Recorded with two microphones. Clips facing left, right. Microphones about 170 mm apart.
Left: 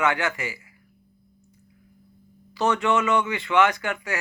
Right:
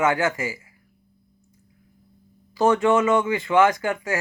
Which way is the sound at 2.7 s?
25° right (ahead or behind).